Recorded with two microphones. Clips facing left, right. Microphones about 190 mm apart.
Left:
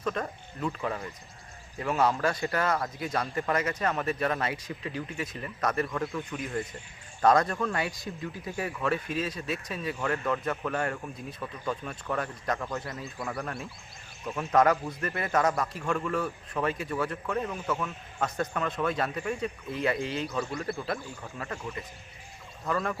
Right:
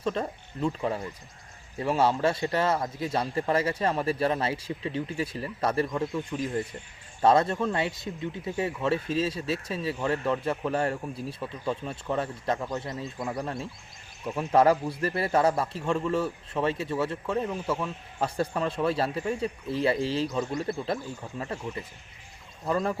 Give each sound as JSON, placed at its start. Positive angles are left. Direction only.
{"t": 0.0, "sound": "a man's voice", "side_deg": -30}